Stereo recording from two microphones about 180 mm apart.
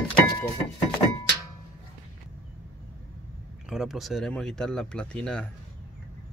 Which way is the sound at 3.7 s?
Centre (ahead or behind).